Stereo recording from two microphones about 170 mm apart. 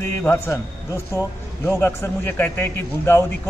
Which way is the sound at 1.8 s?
15° left (ahead or behind).